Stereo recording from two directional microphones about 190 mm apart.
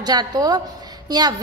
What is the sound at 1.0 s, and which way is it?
Speech, 20° right (ahead or behind).